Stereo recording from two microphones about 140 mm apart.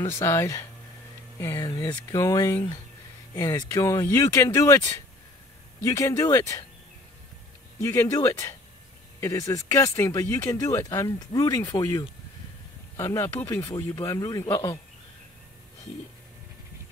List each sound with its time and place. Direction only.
0.0 s speech: 20° left (ahead or behind)
7.8 s speech: 20° left (ahead or behind)